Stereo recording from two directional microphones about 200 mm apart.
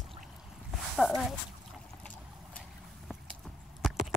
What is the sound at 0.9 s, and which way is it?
Speech, centre (ahead or behind).